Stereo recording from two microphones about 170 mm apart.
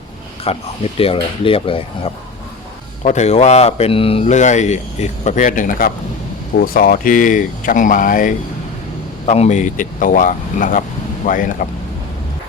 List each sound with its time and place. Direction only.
0.5 s speech: 35° left (ahead or behind)
3.0 s speech: 45° left (ahead or behind)
9.2 s speech: 40° left (ahead or behind)